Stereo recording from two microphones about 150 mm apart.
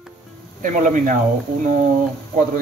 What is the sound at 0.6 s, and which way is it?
Speech, 60° right (ahead or behind).